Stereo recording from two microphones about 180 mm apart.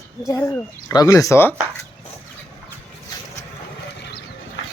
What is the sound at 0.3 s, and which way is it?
Speech, 15° left (ahead or behind).